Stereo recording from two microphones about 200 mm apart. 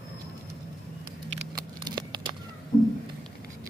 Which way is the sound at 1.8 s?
20° right (ahead or behind).